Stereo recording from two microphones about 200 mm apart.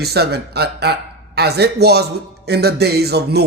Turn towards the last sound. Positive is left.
turn(degrees=-55)  # may be behind; listen again after turning